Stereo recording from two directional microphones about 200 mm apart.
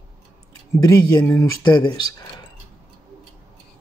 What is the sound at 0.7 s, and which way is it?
Speech, 15° left (ahead or behind).